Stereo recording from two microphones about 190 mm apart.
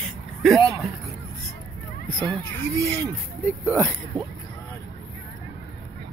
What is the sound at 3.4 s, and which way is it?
Speech, 10° left (ahead or behind).